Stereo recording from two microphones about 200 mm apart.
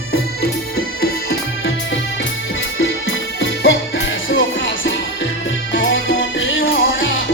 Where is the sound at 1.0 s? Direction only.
50° left (ahead or behind).